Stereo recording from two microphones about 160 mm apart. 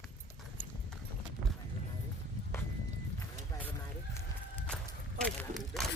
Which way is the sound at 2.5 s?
15° left (ahead or behind).